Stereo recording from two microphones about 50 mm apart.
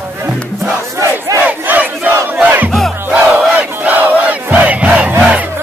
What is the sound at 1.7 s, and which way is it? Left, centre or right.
Crowd, right.